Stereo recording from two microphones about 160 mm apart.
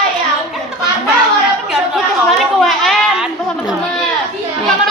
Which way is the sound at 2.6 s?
Centre (ahead or behind).